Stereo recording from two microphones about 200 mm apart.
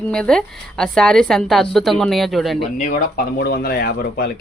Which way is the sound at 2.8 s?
40° left (ahead or behind).